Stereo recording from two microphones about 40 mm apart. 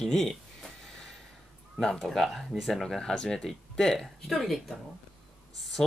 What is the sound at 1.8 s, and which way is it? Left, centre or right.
Speech, centre.